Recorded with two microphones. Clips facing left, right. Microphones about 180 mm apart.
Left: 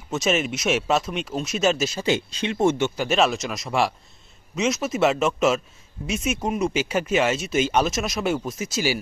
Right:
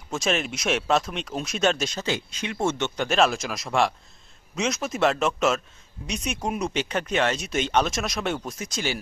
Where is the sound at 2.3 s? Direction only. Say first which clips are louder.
Left 5 dB; 30° left (ahead or behind).